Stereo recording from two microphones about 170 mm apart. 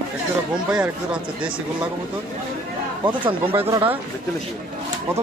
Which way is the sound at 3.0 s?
30° right (ahead or behind).